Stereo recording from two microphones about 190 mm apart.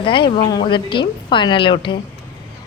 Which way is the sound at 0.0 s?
25° left (ahead or behind).